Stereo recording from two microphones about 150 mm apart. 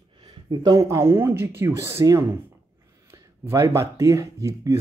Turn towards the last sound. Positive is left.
turn(degrees=-20)  # may be behind; listen again after turning